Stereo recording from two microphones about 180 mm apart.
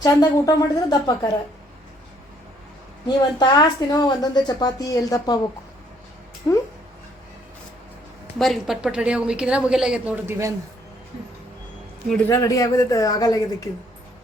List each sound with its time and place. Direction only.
0.0 s a woman's voice: 20° left (ahead or behind)
3.3 s a woman's voice: 25° left (ahead or behind)
6.5 s speech: 15° left (ahead or behind)
8.4 s a woman's voice: centre (ahead or behind); by 10.5 s 15° right (ahead or behind)
12.3 s a woman's voice: 20° left (ahead or behind)